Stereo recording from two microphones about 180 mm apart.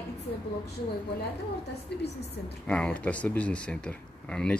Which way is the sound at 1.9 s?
65° left (ahead or behind).